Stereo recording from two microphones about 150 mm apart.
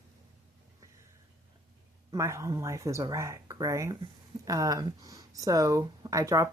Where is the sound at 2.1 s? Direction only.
20° right (ahead or behind).